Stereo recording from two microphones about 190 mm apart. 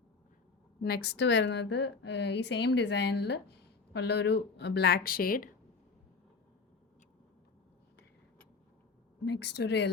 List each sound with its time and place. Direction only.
0.8 s a woman's voice: 55° left (ahead or behind)
9.2 s a woman's voice: 60° left (ahead or behind)